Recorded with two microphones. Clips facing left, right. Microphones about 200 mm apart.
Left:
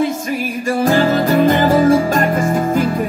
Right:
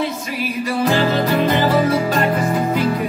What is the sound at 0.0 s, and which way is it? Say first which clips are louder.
Music: left 5 dB; 50° left (ahead or behind).